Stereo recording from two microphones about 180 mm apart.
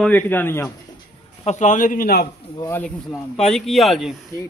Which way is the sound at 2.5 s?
15° left (ahead or behind).